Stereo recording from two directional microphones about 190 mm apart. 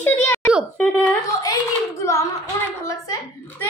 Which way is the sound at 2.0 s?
15° left (ahead or behind).